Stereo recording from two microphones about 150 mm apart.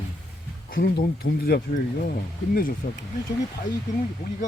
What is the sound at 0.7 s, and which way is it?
Speech, 80° left.